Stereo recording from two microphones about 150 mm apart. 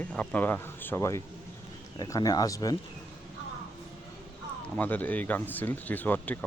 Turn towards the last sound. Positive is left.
turn(degrees=10)  # may be behind; listen again after turning